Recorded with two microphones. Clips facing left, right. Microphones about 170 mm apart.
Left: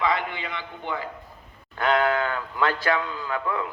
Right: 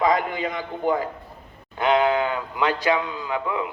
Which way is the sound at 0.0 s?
45° right (ahead or behind).